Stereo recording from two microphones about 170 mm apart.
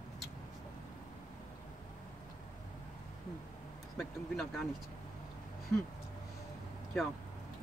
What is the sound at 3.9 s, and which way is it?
Speech, centre (ahead or behind).